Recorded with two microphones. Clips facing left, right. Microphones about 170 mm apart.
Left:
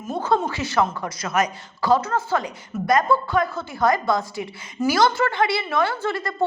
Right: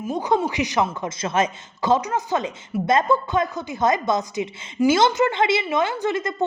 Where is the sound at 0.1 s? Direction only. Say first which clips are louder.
Even; 15° right (ahead or behind).